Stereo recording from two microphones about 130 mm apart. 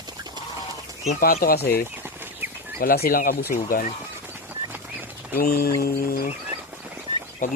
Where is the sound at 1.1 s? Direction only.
90° left.